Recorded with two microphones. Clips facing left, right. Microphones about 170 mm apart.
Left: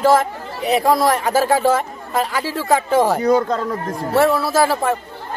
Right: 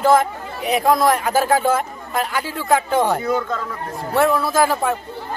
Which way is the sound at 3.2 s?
40° left (ahead or behind).